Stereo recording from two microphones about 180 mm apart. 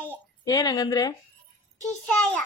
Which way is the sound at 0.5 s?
20° left (ahead or behind).